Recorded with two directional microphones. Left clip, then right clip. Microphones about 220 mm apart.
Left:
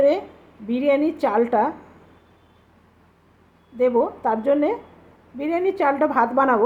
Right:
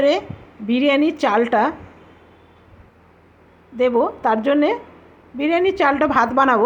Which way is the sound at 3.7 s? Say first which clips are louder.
Right 2 dB; 15° right (ahead or behind).